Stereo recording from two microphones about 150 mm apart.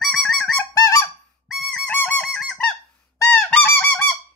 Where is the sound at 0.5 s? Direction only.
20° left (ahead or behind).